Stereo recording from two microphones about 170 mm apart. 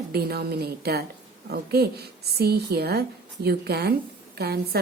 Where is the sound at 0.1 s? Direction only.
65° right (ahead or behind).